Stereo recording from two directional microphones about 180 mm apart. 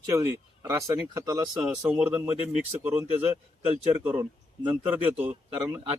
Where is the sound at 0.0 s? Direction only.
20° right (ahead or behind).